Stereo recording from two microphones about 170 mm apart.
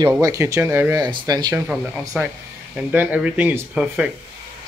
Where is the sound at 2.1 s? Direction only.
10° right (ahead or behind).